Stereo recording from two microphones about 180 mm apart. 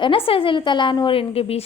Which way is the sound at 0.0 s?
30° left (ahead or behind).